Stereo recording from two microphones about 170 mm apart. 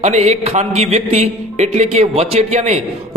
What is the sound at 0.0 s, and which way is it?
A man's voice, 40° right (ahead or behind).